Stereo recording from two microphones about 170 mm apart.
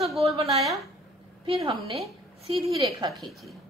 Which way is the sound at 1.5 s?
30° right (ahead or behind).